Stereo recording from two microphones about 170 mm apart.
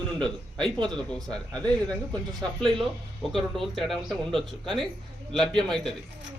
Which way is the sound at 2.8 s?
Centre (ahead or behind).